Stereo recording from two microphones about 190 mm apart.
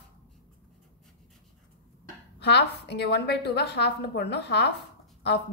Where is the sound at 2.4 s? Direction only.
60° left (ahead or behind).